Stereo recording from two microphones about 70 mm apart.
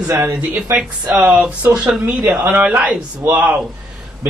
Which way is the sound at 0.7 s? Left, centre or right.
Centre.